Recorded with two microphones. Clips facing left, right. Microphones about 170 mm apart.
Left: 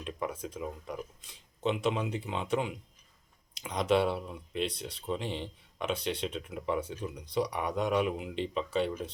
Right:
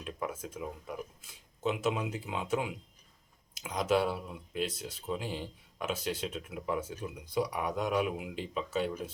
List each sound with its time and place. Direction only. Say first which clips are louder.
0.0 s speech: left 2 dB; 5° right (ahead or behind)